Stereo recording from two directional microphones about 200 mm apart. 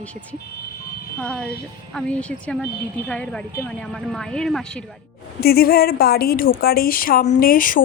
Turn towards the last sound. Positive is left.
turn(degrees=45)  # may be behind; listen again after turning